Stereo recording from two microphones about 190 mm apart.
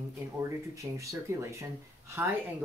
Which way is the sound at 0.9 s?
15° right (ahead or behind).